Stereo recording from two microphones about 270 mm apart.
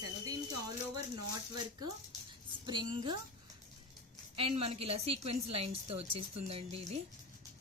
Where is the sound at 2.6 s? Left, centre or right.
Centre.